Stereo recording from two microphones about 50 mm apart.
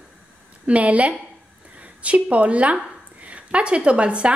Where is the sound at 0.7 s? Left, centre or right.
Right.